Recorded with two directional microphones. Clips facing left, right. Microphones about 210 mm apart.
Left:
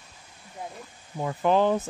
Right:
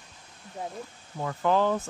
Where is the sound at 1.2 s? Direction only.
15° left (ahead or behind).